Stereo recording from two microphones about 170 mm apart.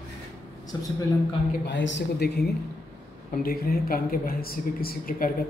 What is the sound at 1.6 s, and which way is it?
Speech, 90° left.